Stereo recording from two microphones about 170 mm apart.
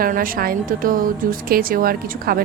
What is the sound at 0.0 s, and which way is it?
A woman's voice, 55° right (ahead or behind).